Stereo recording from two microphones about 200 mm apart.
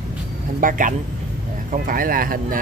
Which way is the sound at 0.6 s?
40° right (ahead or behind).